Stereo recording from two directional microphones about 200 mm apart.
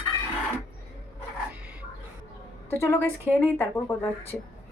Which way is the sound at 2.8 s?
15° left (ahead or behind).